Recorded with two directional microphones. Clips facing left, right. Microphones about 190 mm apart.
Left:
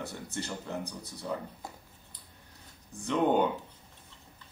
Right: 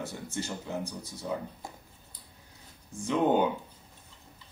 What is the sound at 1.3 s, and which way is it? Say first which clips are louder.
Speech: right 2 dB; 10° right (ahead or behind).